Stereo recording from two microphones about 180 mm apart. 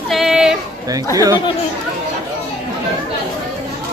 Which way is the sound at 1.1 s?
20° right (ahead or behind).